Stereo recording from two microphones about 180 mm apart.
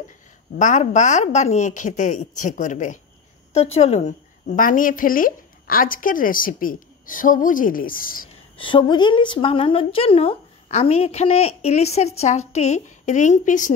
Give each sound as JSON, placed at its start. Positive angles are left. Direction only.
{"t": 0.6, "sound": "a woman's voice", "side_deg": 45}
{"t": 8.5, "sound": "a woman's voice", "side_deg": 25}